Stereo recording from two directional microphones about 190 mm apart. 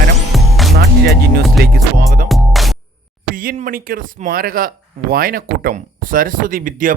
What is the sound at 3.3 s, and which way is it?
Speech, 50° right (ahead or behind).